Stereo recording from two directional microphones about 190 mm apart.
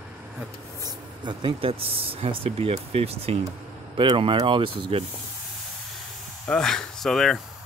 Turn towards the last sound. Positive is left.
turn(degrees=0)  # may be behind; listen again after turning